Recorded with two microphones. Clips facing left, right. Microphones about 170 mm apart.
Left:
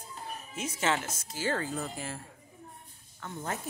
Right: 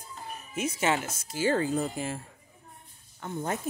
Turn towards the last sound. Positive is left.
turn(degrees=-20)  # may be behind; listen again after turning